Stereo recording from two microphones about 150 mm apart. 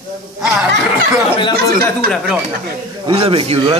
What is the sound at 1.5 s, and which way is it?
Speech, 90° right.